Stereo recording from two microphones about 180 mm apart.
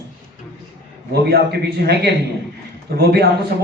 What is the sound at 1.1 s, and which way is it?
Speech, 60° right (ahead or behind).